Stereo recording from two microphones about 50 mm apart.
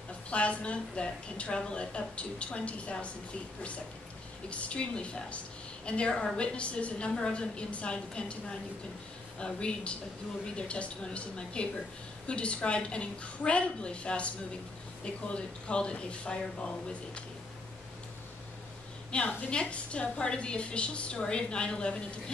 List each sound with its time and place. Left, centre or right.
0.3 s a woman's voice: left
4.5 s a woman's voice: left
19.1 s a woman's voice: left